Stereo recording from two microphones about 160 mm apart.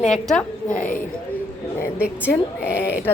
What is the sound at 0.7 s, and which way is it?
Speech, 60° left (ahead or behind).